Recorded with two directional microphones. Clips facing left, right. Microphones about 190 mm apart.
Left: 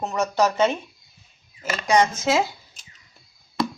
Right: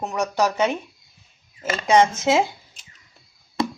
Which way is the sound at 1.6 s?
25° right (ahead or behind).